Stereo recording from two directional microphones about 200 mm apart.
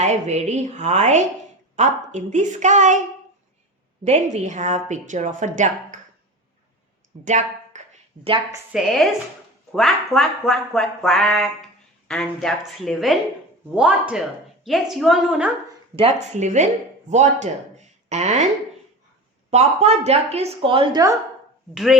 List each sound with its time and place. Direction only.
0.0 s a woman's voice: 35° right (ahead or behind)
4.0 s a woman's voice: 35° right (ahead or behind)
7.3 s a sound: 35° right (ahead or behind)
8.7 s speech: centre (ahead or behind)
16.0 s a woman's voice: 35° right (ahead or behind)
19.5 s a woman's voice: 30° right (ahead or behind)